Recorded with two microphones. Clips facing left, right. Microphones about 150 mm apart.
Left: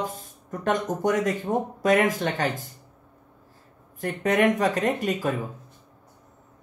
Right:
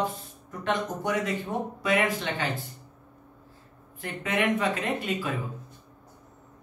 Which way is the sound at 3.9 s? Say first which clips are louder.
Left 6 dB; 40° left (ahead or behind).